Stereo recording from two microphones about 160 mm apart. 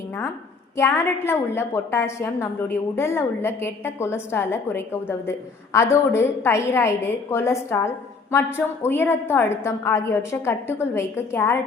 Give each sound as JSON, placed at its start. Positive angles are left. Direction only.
{"t": 0.8, "sound": "a woman's voice", "side_deg": 15}